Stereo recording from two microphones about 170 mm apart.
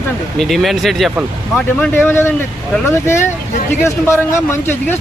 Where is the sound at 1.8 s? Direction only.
15° left (ahead or behind).